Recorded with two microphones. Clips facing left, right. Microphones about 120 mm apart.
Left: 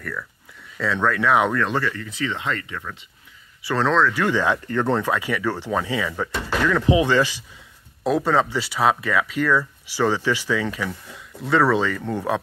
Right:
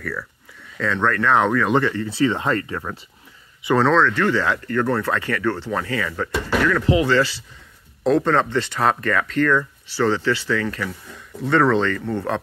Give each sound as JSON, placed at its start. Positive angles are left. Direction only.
{"t": 0.7, "sound": "speech", "side_deg": 5}
{"t": 1.6, "sound": "speech", "side_deg": -20}
{"t": 3.8, "sound": "speech", "side_deg": 0}
{"t": 4.1, "sound": "speech", "side_deg": 15}